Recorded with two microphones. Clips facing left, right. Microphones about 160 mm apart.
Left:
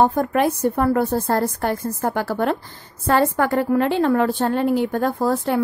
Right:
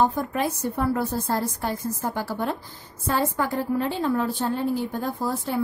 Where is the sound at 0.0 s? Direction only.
60° left (ahead or behind).